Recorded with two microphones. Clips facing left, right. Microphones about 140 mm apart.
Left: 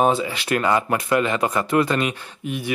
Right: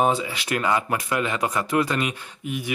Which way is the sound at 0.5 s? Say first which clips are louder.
Left 3 dB; 45° left (ahead or behind).